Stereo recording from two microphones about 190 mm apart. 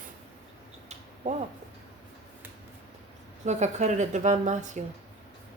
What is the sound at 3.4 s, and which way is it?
A woman's voice, 35° right (ahead or behind).